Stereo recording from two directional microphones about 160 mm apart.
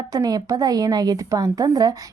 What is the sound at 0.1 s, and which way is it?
A woman's voice, 25° right (ahead or behind).